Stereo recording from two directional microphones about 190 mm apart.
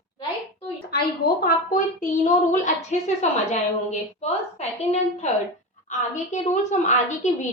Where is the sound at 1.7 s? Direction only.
40° left (ahead or behind).